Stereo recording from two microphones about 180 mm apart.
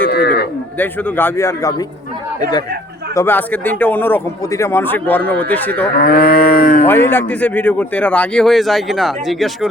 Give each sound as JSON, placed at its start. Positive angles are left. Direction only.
{"t": 0.1, "sound": "a sound", "side_deg": 60}
{"t": 0.8, "sound": "a man's voice", "side_deg": 10}
{"t": 3.2, "sound": "a man's voice", "side_deg": 10}
{"t": 6.0, "sound": "cattle", "side_deg": 55}
{"t": 6.8, "sound": "a man's voice", "side_deg": 10}